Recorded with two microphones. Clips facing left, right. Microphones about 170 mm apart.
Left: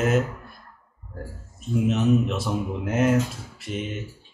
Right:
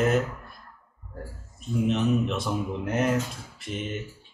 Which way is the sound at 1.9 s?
5° left (ahead or behind).